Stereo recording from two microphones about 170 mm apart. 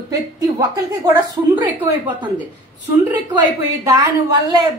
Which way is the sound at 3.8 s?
20° right (ahead or behind).